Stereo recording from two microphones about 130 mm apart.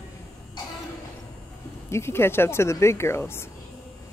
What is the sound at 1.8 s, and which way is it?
Speech, 20° left (ahead or behind).